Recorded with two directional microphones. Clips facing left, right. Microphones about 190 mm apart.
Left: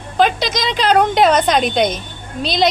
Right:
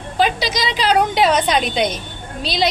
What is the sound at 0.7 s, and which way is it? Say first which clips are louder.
Speech: left 3 dB; 50° left (ahead or behind).